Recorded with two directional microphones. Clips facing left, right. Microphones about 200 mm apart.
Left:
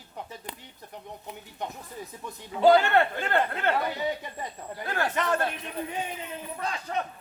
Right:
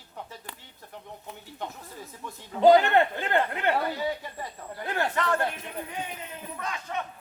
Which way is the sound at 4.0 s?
20° left (ahead or behind).